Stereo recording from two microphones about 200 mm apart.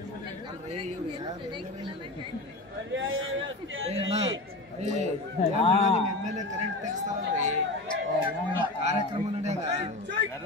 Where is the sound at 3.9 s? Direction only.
30° right (ahead or behind).